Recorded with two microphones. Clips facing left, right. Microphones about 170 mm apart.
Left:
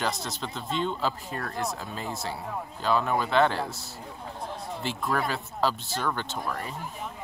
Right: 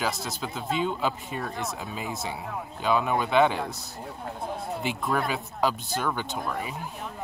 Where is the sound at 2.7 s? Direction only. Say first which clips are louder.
Right 1 dB; 15° right (ahead or behind).